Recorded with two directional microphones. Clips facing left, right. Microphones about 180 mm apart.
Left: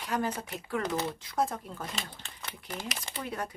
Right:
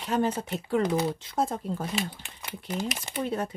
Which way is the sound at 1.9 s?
10° right (ahead or behind).